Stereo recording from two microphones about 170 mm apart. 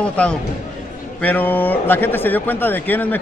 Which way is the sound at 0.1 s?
10° left (ahead or behind).